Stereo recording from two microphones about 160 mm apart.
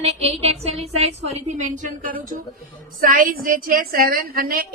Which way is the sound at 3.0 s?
60° right (ahead or behind).